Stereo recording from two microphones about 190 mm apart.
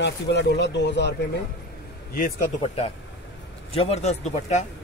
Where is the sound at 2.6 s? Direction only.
30° left (ahead or behind).